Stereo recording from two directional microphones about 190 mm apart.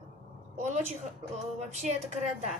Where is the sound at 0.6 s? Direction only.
40° right (ahead or behind).